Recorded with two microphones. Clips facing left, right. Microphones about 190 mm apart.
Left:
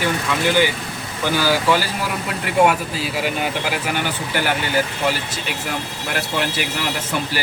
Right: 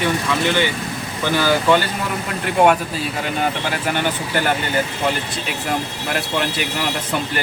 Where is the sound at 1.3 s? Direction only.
5° left (ahead or behind).